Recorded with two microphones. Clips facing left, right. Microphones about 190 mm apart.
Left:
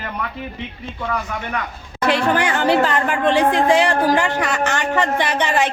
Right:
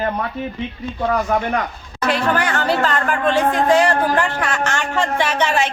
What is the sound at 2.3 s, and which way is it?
Speech, 15° left (ahead or behind).